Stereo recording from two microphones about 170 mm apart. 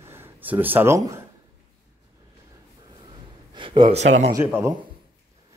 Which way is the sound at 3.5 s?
30° right (ahead or behind).